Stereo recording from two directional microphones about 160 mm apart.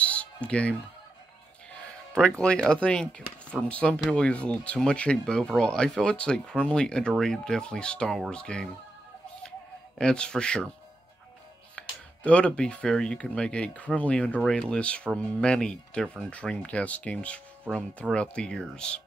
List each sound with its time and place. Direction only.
0.0 s music: 10° left (ahead or behind)
1.9 s speech: 5° left (ahead or behind)
9.9 s speech: 5° left (ahead or behind)
11.7 s speech: 10° left (ahead or behind)